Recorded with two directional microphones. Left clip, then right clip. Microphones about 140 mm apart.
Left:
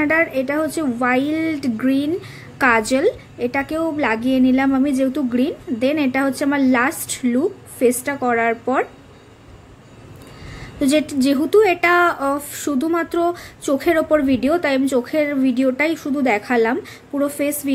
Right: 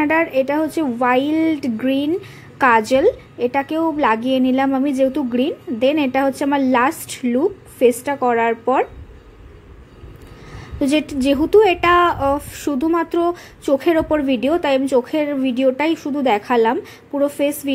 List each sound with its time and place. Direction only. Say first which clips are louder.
0.0 s a woman's voice: right 1 dB; 20° right (ahead or behind)
10.6 s a woman's voice: left 1 dB; 15° right (ahead or behind)